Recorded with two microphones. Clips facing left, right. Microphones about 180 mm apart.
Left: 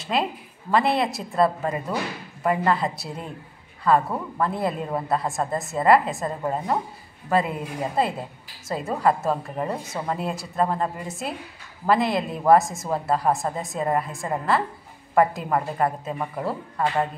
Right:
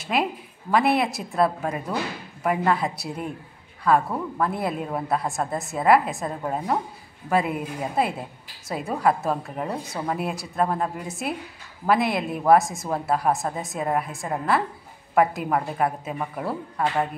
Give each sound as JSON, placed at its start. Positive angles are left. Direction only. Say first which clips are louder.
{"t": 0.1, "sound": "speech", "louder": "even", "side_deg": -5}